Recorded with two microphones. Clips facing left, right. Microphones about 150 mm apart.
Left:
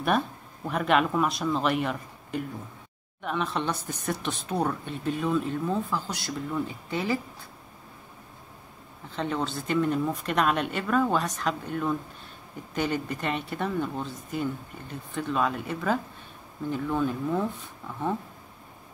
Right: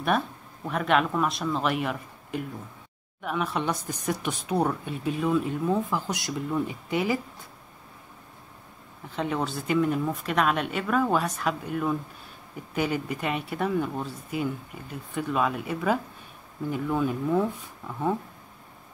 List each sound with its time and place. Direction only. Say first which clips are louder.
0.7 s speech: even; centre (ahead or behind)
9.1 s speech: right 1 dB; 10° right (ahead or behind)